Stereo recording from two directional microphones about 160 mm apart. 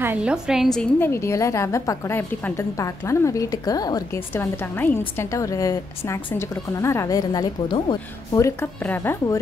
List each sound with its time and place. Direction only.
0.0 s a woman's voice: 10° right (ahead or behind)
0.9 s a woman's voice: 15° left (ahead or behind)
4.7 s a woman's voice: 15° left (ahead or behind)
8.5 s speech: 15° left (ahead or behind)